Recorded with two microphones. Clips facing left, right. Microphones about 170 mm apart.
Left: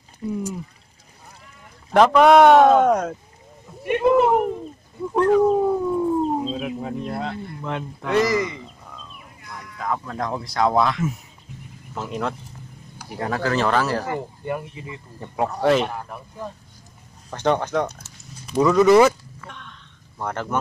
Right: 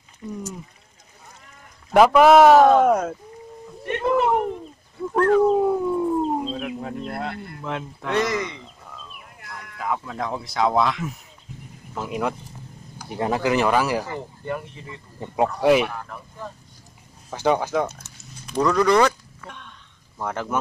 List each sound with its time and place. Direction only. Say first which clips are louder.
0.3 s speech: left 5 dB; 15° left (ahead or behind)
1.9 s speech: even; 5° right (ahead or behind)
3.8 s a sound: left 4 dB; 10° left (ahead or behind)
7.4 s speech: left 1 dB; centre (ahead or behind)
14.4 s speech: left 2 dB; 10° left (ahead or behind)
15.1 s speech: right 2 dB; 15° right (ahead or behind)
15.9 s speech: left 2 dB; 15° left (ahead or behind)
17.3 s speech: even; 5° right (ahead or behind)
20.2 s speech: even; 5° right (ahead or behind)